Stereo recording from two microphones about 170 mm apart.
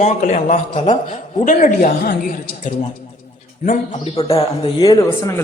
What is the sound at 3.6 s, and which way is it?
A man's voice, 40° left (ahead or behind).